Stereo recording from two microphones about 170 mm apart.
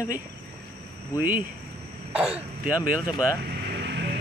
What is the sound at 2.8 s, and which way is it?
Speech, 10° right (ahead or behind).